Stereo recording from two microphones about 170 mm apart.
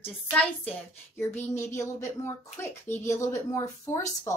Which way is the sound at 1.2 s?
15° left (ahead or behind).